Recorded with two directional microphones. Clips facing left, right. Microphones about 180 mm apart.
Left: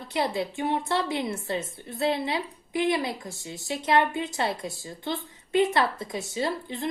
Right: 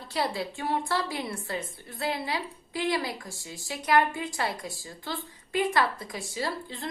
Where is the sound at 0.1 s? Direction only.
20° left (ahead or behind).